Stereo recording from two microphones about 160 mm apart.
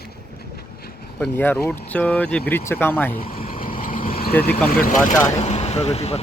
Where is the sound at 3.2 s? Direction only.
65° left (ahead or behind).